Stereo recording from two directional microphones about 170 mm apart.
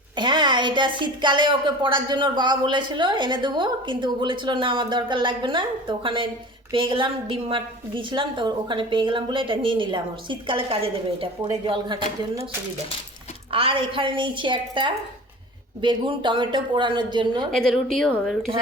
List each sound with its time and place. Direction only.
0.2 s a woman's voice: 25° right (ahead or behind)
13.5 s a woman's voice: 30° right (ahead or behind)
17.5 s a woman's voice: centre (ahead or behind)